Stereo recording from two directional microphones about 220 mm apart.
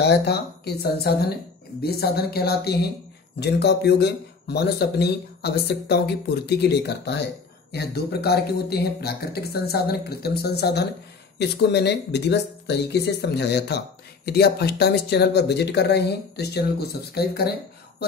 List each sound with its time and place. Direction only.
0.0 s speech: 50° left (ahead or behind)